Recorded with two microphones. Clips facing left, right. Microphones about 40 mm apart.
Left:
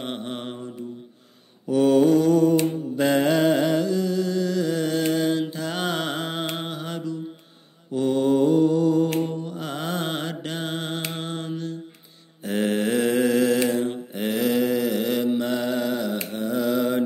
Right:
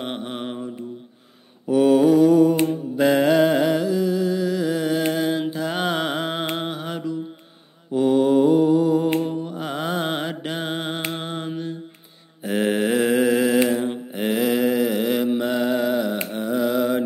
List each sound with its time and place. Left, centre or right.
0.0 s mantra: centre
1.7 s mantra: centre
3.0 s a sound: centre
7.9 s mantra: centre
11.0 s music: centre
12.4 s mantra: centre